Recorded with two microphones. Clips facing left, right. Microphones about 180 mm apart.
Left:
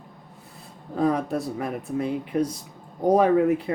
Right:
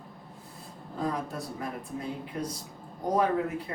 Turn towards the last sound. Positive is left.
turn(degrees=75)  # may be behind; listen again after turning